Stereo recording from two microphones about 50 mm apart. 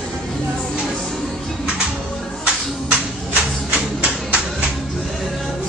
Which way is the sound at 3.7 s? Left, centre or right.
Right.